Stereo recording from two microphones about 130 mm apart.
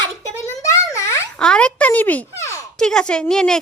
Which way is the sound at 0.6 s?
25° left (ahead or behind).